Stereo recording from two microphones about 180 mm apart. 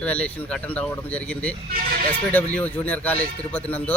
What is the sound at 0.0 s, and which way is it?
Speech, 10° left (ahead or behind).